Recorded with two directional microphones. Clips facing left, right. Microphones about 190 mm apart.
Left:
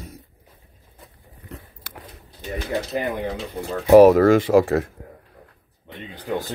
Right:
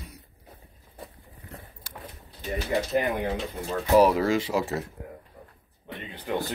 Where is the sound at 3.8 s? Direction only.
55° left (ahead or behind).